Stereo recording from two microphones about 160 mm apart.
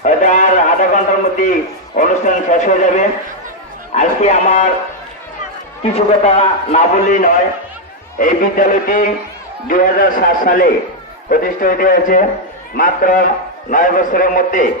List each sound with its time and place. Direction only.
0.0 s a sound: 50° left (ahead or behind)
2.0 s a man's voice: 50° left (ahead or behind)
5.8 s a man's voice: 40° left (ahead or behind); by 14.7 s 55° left (ahead or behind)